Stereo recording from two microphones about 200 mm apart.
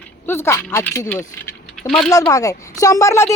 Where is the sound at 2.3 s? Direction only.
15° left (ahead or behind).